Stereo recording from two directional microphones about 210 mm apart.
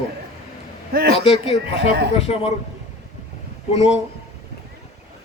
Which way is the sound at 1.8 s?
50° right (ahead or behind).